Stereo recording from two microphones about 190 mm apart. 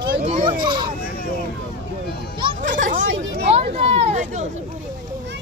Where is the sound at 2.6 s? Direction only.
45° right (ahead or behind).